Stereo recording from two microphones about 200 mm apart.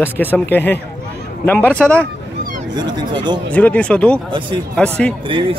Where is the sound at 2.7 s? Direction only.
20° right (ahead or behind).